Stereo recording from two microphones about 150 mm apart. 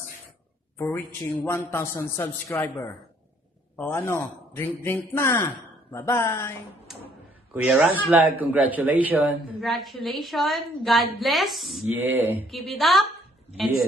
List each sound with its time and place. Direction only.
0.7 s a man's voice: 15° left (ahead or behind)
7.5 s speech: 5° right (ahead or behind)
9.6 s a woman's voice: centre (ahead or behind)
11.9 s speech: 10° right (ahead or behind)
12.4 s a woman's voice: centre (ahead or behind)